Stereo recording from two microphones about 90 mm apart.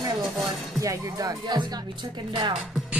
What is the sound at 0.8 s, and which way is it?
Music, 40° right (ahead or behind).